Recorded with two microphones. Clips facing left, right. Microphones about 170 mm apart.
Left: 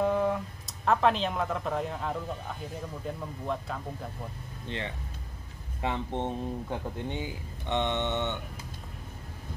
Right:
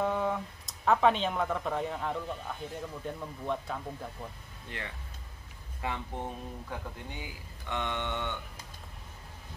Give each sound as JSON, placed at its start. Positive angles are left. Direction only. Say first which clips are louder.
{"t": 0.0, "sound": "speech", "louder": "left 4 dB", "side_deg": 0}
{"t": 4.6, "sound": "speech", "louder": "left 6 dB", "side_deg": 25}